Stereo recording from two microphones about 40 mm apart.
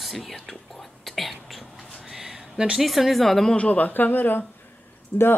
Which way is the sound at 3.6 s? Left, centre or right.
Left.